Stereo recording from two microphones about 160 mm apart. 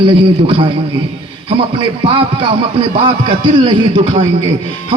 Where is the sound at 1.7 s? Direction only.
35° right (ahead or behind).